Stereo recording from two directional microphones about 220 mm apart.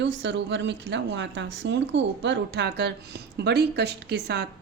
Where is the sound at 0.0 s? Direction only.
55° right (ahead or behind).